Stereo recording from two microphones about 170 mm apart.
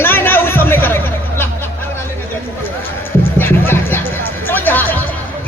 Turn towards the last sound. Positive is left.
turn(degrees=10)  # may be behind; listen again after turning